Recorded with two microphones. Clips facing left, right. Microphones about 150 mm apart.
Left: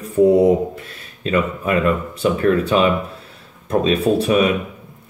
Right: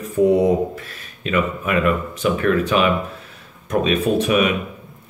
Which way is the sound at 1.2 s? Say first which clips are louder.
Left 2 dB; 35° left (ahead or behind).